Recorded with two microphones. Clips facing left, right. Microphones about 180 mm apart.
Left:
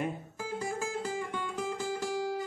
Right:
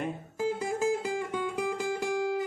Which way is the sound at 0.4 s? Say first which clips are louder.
Right 7 dB; 20° right (ahead or behind).